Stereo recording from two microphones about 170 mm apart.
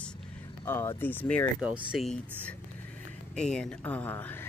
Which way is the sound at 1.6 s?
5° right (ahead or behind).